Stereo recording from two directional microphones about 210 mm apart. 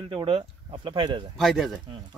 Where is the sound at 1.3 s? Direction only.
Centre (ahead or behind).